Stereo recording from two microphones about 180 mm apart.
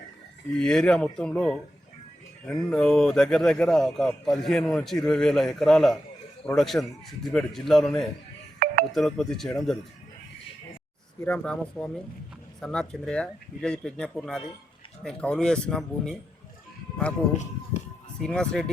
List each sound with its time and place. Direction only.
0.5 s a man's voice: 5° left (ahead or behind)
2.6 s a man's voice: 5° left (ahead or behind)
8.5 s telephone dialing: 45° right (ahead or behind)
8.9 s a man's voice: centre (ahead or behind)
11.3 s a man's voice: 5° left (ahead or behind)
18.2 s a man's voice: 5° left (ahead or behind)